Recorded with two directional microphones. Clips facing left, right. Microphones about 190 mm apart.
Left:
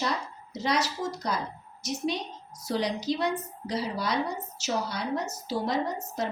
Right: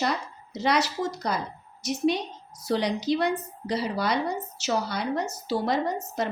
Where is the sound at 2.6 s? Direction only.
65° right (ahead or behind).